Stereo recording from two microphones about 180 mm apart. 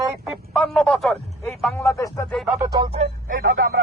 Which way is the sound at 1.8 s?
15° left (ahead or behind).